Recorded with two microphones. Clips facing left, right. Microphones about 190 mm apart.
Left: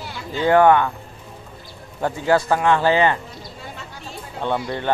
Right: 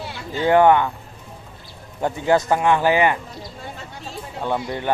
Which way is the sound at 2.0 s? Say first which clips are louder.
Even; 20° right (ahead or behind).